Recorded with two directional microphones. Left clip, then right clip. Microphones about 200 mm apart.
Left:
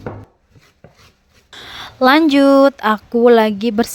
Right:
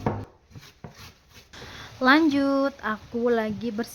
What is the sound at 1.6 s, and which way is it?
Speech, 50° left (ahead or behind).